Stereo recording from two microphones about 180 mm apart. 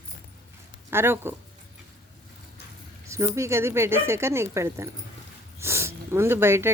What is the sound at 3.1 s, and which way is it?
A woman's voice, 15° right (ahead or behind).